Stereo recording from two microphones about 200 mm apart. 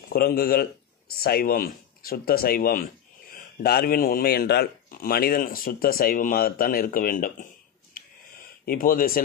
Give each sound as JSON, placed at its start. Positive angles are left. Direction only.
{"t": 0.1, "sound": "speech", "side_deg": 50}
{"t": 8.6, "sound": "speech", "side_deg": 45}